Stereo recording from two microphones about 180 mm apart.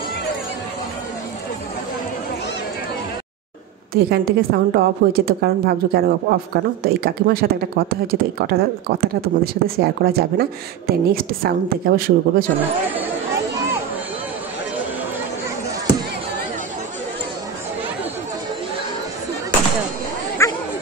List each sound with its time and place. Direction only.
3.9 s a woman's voice: 60° right (ahead or behind)
20.4 s dog: 15° left (ahead or behind)